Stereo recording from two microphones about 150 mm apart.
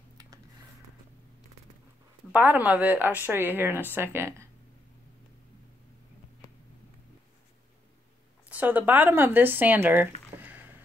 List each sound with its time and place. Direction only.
2.3 s speech: 10° right (ahead or behind)
8.5 s speech: 10° right (ahead or behind)